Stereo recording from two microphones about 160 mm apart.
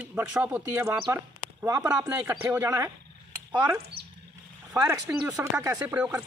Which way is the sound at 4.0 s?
80° right.